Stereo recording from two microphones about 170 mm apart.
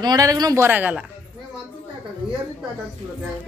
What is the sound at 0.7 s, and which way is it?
Speech, 10° right (ahead or behind).